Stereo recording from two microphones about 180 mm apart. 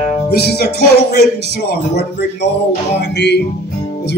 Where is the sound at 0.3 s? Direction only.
65° left (ahead or behind).